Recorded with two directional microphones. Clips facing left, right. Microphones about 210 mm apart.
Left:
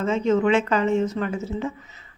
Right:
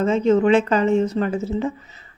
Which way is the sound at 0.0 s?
35° right (ahead or behind).